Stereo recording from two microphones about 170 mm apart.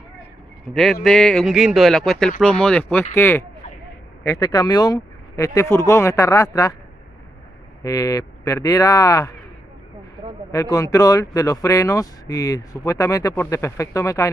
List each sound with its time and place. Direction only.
1.0 s speech: centre (ahead or behind); by 6.7 s 20° left (ahead or behind)
7.8 s speech: 20° left (ahead or behind)
10.5 s speech: 20° left (ahead or behind)